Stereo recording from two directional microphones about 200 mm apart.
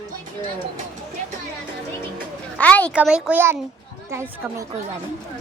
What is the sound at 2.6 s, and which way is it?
Speech, 5° left (ahead or behind).